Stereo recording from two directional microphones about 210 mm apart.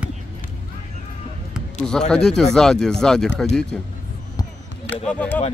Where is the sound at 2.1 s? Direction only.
5° left (ahead or behind).